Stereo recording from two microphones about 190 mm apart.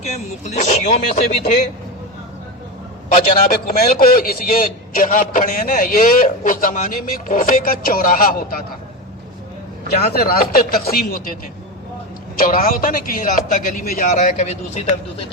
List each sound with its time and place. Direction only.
0.4 s speech: 40° left (ahead or behind)
3.8 s a man's voice: 50° left (ahead or behind)
9.9 s a man's voice: 55° left (ahead or behind)
12.4 s a man's voice: 50° left (ahead or behind)